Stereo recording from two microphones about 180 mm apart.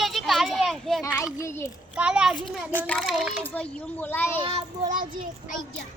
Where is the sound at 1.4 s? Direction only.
15° left (ahead or behind).